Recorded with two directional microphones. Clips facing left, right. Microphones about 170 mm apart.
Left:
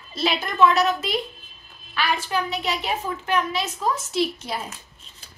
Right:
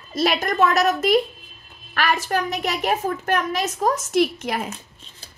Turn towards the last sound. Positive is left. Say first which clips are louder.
# right 5 dB
turn(degrees=-70)  # may be behind; listen again after turning